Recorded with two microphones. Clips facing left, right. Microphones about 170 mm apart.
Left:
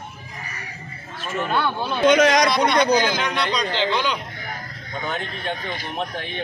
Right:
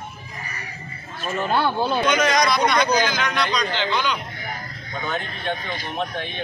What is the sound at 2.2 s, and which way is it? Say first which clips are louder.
Speech: left 3 dB; 90° left.